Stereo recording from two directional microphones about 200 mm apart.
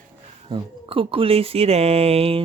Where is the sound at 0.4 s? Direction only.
25° right (ahead or behind).